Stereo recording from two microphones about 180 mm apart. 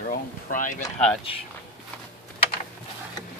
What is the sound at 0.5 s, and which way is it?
Speech, 45° left (ahead or behind).